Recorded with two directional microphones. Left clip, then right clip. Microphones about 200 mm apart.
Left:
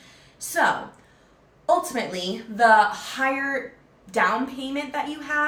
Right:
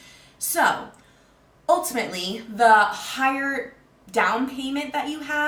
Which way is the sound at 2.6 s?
5° right (ahead or behind).